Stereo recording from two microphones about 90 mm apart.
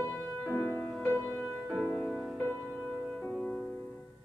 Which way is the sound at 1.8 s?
20° left (ahead or behind).